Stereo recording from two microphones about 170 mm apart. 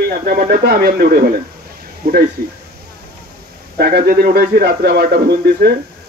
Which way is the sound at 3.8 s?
65° right (ahead or behind).